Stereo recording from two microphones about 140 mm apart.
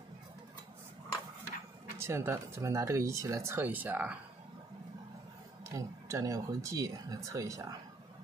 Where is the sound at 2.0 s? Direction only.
15° right (ahead or behind).